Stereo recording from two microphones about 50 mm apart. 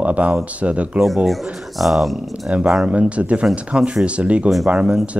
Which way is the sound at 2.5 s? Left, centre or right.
Right.